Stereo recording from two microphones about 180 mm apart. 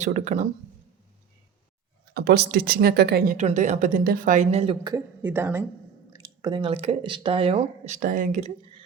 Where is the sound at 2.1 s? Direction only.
65° right (ahead or behind).